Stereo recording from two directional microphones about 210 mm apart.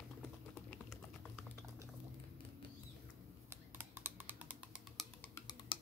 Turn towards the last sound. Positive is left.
turn(degrees=20)  # may be behind; listen again after turning